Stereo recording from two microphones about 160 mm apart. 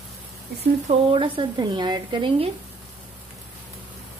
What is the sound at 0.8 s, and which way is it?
Speech, 35° right (ahead or behind).